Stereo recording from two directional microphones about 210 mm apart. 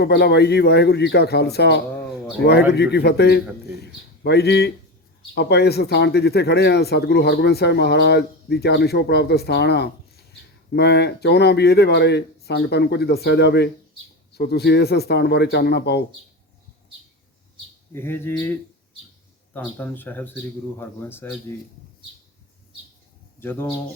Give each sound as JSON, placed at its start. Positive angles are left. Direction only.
{"t": 0.0, "sound": "speech", "side_deg": 50}
{"t": 17.9, "sound": "speech", "side_deg": 10}
{"t": 19.5, "sound": "speech", "side_deg": 10}
{"t": 23.4, "sound": "speech", "side_deg": 10}